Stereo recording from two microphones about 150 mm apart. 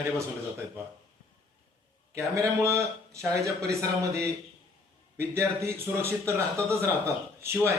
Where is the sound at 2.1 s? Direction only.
20° right (ahead or behind).